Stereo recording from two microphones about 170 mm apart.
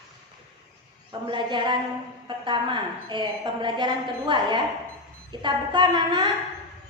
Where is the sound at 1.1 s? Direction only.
30° right (ahead or behind).